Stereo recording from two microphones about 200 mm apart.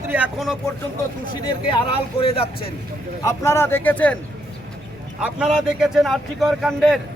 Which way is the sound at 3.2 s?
15° left (ahead or behind).